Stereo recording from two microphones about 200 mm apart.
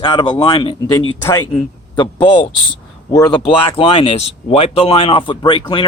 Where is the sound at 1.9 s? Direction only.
25° left (ahead or behind).